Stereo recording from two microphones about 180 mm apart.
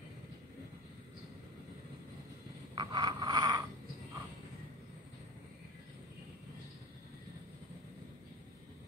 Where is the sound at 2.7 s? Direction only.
20° right (ahead or behind).